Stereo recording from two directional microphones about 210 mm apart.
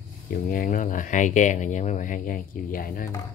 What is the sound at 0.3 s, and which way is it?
Speech, 40° left (ahead or behind).